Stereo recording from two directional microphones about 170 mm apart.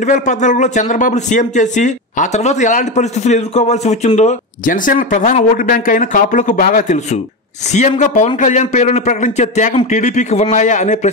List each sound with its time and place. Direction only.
0.0 s a man's voice: 45° left (ahead or behind)